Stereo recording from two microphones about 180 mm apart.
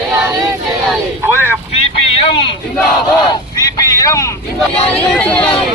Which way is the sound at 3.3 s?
20° left (ahead or behind).